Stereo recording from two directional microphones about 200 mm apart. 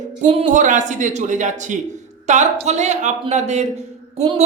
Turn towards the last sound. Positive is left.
turn(degrees=-30)  # may be behind; listen again after turning